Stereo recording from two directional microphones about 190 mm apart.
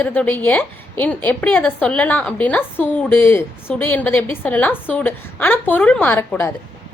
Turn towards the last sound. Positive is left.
turn(degrees=10)  # may be behind; listen again after turning